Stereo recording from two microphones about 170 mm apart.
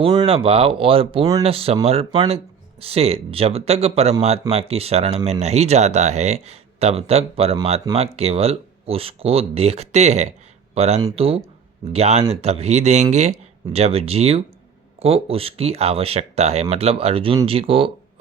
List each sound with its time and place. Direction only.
0.0 s speech: 25° right (ahead or behind)
0.3 s speech: 35° right (ahead or behind)